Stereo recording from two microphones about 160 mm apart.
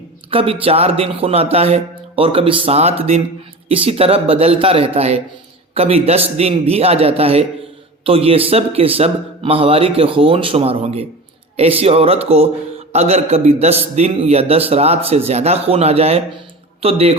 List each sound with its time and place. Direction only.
0.3 s a man's voice: 35° right (ahead or behind)